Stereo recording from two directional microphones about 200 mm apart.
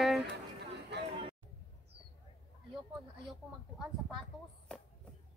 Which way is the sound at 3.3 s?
Centre (ahead or behind).